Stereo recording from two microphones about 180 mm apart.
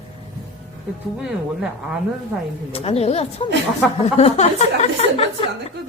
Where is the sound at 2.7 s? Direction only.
35° left (ahead or behind).